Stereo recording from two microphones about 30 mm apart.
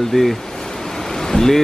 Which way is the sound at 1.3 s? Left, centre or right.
Centre.